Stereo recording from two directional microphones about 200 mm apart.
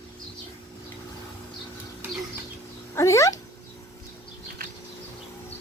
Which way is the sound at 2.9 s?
15° left (ahead or behind).